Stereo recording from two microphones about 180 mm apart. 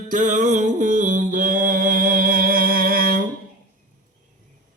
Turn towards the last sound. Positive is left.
turn(degrees=-55)  # may be behind; listen again after turning